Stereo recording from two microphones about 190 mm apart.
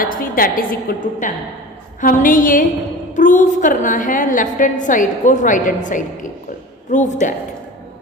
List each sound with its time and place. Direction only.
0.0 s a woman's voice: 50° left (ahead or behind)